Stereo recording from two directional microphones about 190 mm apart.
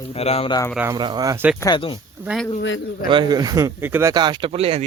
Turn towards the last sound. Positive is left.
turn(degrees=-30)  # may be behind; listen again after turning